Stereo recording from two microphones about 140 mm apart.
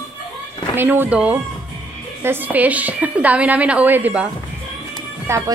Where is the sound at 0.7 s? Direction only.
15° right (ahead or behind).